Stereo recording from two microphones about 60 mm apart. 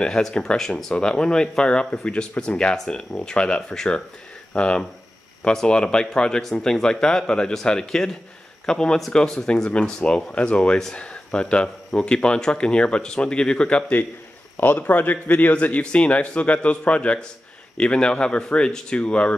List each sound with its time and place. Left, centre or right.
0.0 s speech: centre
14.6 s speech: left